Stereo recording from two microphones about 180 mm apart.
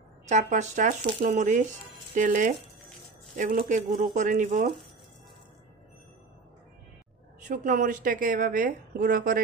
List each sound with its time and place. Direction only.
0.3 s speech: 40° right (ahead or behind)
7.4 s speech: 45° right (ahead or behind)